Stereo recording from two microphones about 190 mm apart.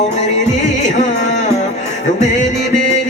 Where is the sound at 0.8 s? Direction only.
40° left (ahead or behind).